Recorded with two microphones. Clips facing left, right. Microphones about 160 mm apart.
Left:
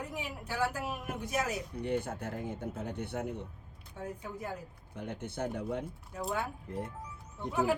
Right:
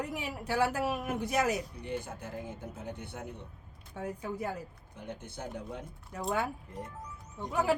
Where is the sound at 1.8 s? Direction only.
60° left (ahead or behind).